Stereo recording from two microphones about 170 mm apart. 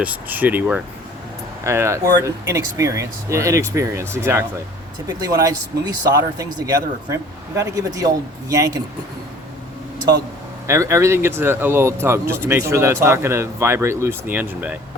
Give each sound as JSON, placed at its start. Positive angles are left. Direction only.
{"t": 0.0, "sound": "speech", "side_deg": -10}
{"t": 10.7, "sound": "speech", "side_deg": -15}